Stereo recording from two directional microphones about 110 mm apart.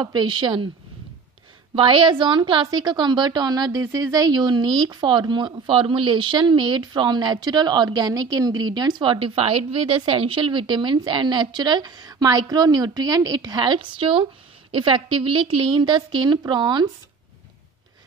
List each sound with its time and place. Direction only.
0.0 s a woman's voice: 45° right (ahead or behind)
1.8 s a woman's voice: 50° right (ahead or behind)